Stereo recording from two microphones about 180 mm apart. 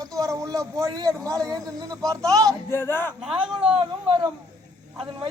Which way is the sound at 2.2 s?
20° right (ahead or behind).